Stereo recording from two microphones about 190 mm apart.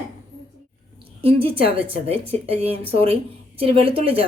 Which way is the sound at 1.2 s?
30° right (ahead or behind).